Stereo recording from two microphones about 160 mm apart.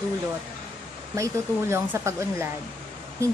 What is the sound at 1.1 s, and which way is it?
A woman's voice, 15° right (ahead or behind).